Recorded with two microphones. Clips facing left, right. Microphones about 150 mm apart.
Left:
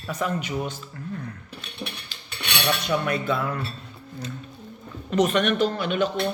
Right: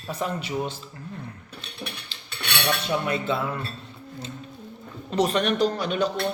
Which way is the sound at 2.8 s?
25° right (ahead or behind).